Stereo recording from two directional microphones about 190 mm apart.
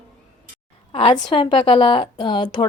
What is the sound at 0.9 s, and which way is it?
A woman's voice, 25° left (ahead or behind).